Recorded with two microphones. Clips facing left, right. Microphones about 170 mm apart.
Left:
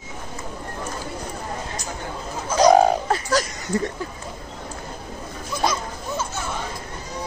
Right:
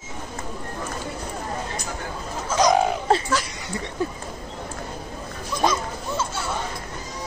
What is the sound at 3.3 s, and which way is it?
Speech, 40° left (ahead or behind).